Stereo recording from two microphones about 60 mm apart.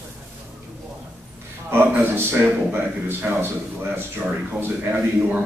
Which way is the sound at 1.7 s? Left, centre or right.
Right.